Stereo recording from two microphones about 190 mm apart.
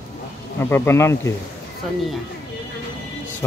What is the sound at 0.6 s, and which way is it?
Speech, 10° left (ahead or behind).